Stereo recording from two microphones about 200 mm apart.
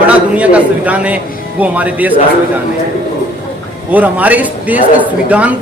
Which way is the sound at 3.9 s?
10° right (ahead or behind).